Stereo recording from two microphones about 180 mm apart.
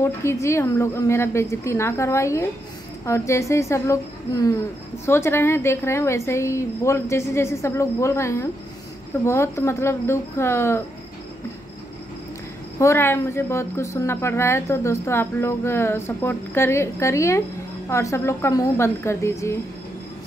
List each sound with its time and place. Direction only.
0.0 s a woman's voice: 15° left (ahead or behind)
12.7 s a woman's voice: 15° left (ahead or behind)